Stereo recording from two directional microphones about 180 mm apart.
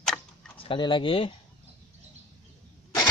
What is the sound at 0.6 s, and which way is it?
Speech, 25° left (ahead or behind).